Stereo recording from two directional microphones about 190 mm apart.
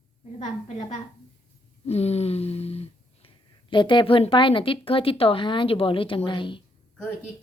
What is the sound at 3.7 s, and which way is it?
Speech, 25° left (ahead or behind).